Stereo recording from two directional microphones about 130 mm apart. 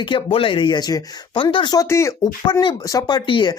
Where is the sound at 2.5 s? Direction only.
35° left (ahead or behind).